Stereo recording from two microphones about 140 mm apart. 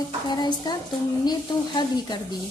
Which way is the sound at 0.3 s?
30° left (ahead or behind).